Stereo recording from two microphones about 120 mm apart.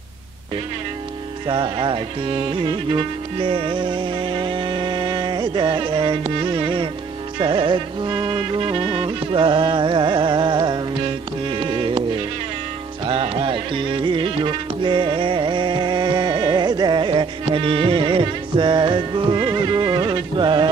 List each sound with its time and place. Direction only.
1.5 s speech: 40° right (ahead or behind)
2.6 s music: 45° right (ahead or behind)
13.0 s music: 45° right (ahead or behind)